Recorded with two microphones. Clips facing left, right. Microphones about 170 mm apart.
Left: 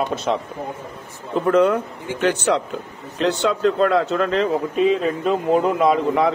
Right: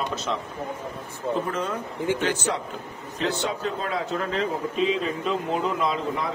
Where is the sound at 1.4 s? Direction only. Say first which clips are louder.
Left 12 dB; 65° left (ahead or behind).